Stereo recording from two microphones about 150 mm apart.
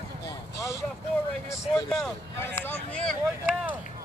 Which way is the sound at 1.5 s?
20° left (ahead or behind).